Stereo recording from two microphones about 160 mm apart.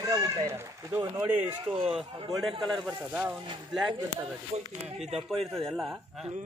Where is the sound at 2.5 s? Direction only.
30° right (ahead or behind).